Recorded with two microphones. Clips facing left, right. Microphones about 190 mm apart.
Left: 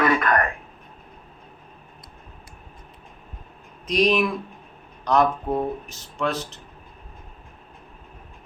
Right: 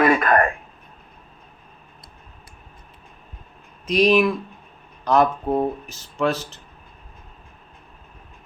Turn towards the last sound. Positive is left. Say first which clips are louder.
# right 4 dB
turn(degrees=0)  # may be behind; listen again after turning